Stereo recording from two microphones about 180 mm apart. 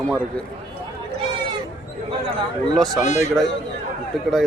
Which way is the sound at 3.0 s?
40° left (ahead or behind).